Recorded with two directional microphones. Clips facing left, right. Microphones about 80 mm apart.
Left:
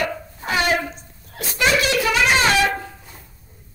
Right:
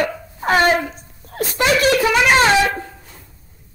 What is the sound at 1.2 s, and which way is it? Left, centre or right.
Laughter, right.